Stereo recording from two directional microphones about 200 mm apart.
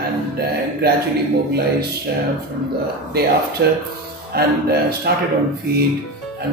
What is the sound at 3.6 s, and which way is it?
A man's voice, 45° right (ahead or behind).